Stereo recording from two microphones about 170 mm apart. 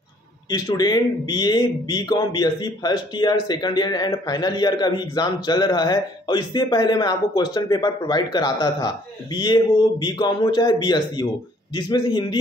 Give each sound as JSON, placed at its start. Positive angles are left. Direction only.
{"t": 0.5, "sound": "a man's voice", "side_deg": 25}